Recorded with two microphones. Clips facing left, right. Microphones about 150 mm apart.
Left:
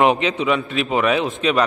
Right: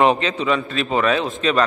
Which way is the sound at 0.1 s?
15° left (ahead or behind).